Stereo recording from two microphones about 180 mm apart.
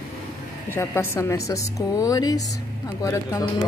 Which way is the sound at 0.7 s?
15° left (ahead or behind).